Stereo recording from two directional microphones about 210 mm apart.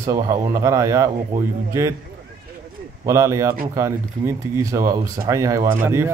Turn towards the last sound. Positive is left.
turn(degrees=-10)  # may be behind; listen again after turning